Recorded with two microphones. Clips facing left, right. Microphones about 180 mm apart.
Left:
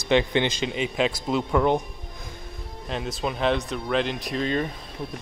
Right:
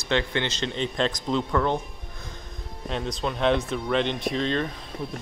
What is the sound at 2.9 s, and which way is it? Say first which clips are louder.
Speech: even; 5° left (ahead or behind).